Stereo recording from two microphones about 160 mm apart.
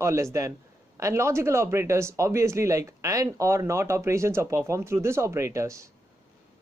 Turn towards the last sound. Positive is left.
turn(degrees=-20)  # may be behind; listen again after turning